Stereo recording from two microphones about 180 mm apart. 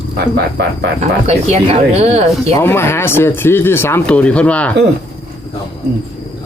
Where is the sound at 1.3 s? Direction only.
35° right (ahead or behind).